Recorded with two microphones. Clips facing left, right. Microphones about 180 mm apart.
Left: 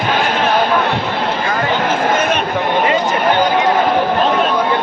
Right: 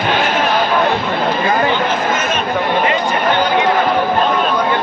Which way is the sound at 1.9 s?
60° left (ahead or behind).